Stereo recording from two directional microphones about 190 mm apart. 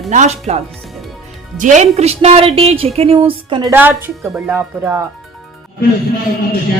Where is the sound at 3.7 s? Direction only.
10° right (ahead or behind).